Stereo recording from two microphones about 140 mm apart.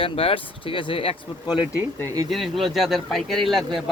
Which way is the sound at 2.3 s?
Centre (ahead or behind).